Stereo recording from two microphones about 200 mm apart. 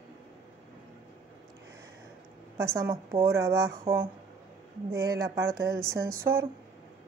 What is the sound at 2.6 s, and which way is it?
Speech, 15° right (ahead or behind).